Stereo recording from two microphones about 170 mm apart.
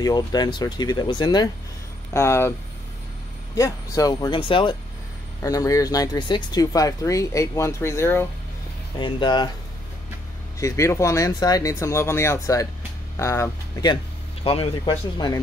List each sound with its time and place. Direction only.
0.0 s speech: 25° left (ahead or behind)
3.5 s speech: 20° left (ahead or behind)
5.4 s speech: 20° left (ahead or behind)
9.0 s speech: 25° left (ahead or behind)
10.6 s speech: 15° left (ahead or behind)
14.4 s speech: 35° left (ahead or behind)